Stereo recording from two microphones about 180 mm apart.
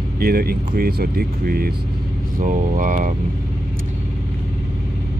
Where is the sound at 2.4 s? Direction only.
45° right (ahead or behind).